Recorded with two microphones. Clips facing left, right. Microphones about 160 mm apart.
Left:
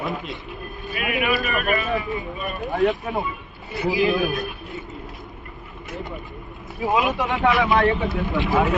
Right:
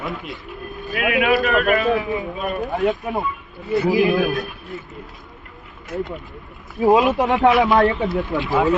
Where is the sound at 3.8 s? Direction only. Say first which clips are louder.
Right 2 dB; 50° right (ahead or behind).